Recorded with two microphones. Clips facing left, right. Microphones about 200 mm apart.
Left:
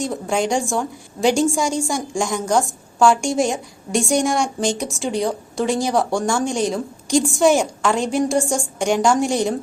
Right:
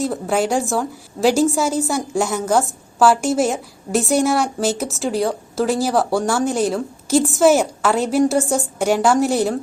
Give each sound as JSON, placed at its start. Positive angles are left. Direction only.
{"t": 0.0, "sound": "speech", "side_deg": -5}